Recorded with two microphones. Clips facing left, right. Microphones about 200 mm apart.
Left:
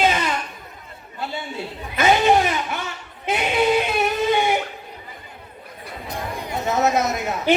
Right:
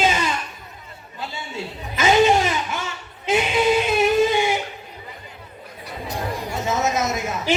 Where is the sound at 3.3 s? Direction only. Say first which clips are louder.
Right 4 dB; 60° left (ahead or behind).